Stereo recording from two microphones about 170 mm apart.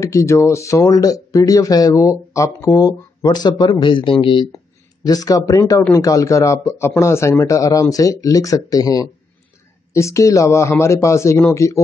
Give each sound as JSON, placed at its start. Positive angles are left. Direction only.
{"t": 0.0, "sound": "speech", "side_deg": 20}